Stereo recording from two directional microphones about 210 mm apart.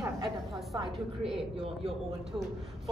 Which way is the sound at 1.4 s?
25° right (ahead or behind).